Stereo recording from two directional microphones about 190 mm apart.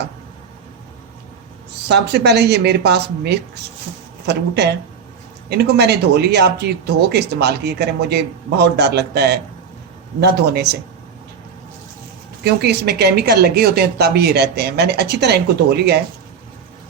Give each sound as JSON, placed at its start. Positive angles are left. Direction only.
{"t": 1.9, "sound": "speech", "side_deg": -60}
{"t": 12.4, "sound": "speech", "side_deg": -60}